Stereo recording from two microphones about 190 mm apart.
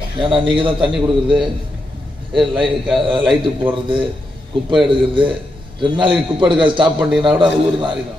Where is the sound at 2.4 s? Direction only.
25° right (ahead or behind).